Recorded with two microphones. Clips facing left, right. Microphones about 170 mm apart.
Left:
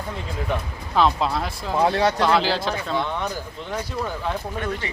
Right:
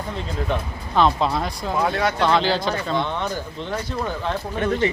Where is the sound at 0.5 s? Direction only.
10° left (ahead or behind).